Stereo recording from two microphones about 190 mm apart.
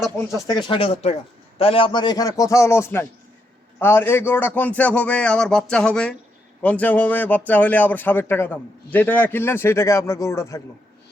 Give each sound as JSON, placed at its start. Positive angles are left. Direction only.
{"t": 0.4, "sound": "a man's voice", "side_deg": 25}